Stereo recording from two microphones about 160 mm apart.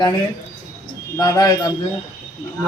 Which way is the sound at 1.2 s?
20° left (ahead or behind).